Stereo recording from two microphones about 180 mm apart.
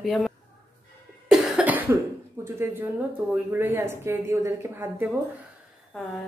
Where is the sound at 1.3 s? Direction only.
5° right (ahead or behind).